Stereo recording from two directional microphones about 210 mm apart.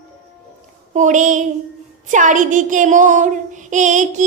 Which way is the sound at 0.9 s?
35° right (ahead or behind).